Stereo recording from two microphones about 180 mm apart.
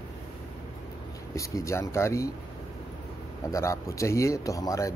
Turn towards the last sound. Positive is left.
turn(degrees=20)  # may be behind; listen again after turning